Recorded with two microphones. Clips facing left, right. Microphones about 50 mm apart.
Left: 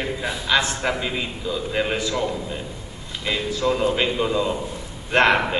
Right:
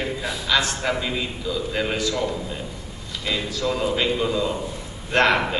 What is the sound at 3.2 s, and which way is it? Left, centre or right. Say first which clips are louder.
A man's voice: left 3 dB; left.